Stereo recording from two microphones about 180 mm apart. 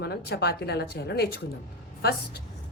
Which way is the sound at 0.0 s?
60° left (ahead or behind).